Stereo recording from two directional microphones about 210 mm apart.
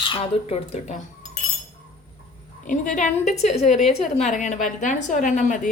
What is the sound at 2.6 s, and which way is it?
A woman's voice, 40° left (ahead or behind).